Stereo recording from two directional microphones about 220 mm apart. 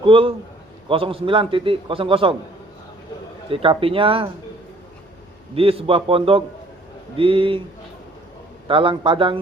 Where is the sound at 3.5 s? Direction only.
25° right (ahead or behind).